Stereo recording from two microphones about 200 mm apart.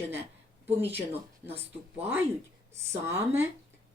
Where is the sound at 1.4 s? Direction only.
30° right (ahead or behind).